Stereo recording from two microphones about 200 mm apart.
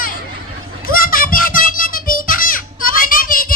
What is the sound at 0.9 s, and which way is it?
Music, 45° left (ahead or behind).